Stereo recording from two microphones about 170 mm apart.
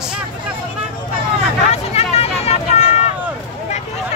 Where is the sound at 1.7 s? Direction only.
35° left (ahead or behind).